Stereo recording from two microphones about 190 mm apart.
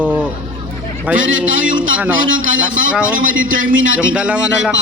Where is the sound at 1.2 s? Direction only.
90° right.